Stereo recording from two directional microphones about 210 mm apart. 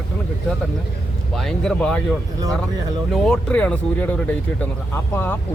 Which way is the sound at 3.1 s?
5° left (ahead or behind).